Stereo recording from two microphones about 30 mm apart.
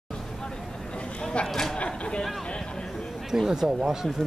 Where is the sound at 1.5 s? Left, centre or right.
Centre.